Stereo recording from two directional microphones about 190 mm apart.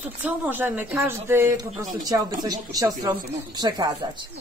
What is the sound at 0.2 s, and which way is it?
Speech, 10° right (ahead or behind).